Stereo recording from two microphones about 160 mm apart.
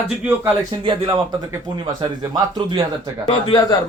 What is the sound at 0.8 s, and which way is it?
Speech, 30° right (ahead or behind).